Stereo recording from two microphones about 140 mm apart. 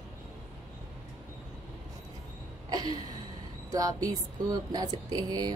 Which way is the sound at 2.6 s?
30° right (ahead or behind).